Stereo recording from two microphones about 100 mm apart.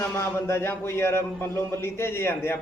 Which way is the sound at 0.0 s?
25° left (ahead or behind).